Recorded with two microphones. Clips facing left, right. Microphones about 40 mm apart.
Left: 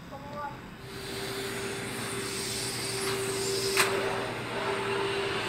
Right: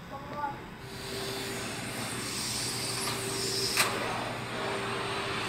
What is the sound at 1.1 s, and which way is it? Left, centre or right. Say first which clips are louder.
Vehicle: left 1 dB; left.